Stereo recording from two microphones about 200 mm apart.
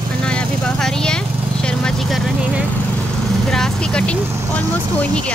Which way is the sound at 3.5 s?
Centre (ahead or behind).